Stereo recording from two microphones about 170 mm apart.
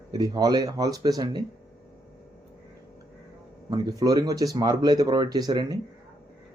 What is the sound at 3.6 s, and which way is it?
Speech, 25° right (ahead or behind).